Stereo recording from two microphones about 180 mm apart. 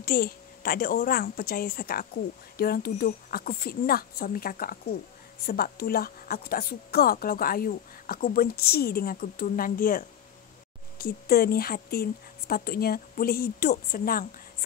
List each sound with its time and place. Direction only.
0.0 s speech: 55° left (ahead or behind)